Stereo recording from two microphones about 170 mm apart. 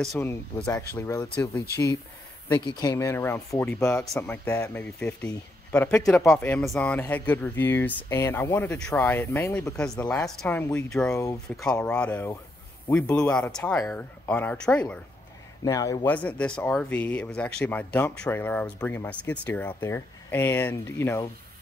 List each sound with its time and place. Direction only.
0.2 s speech: 10° left (ahead or behind)
15.6 s a man's voice: 20° left (ahead or behind)
16.1 s speech: 10° left (ahead or behind)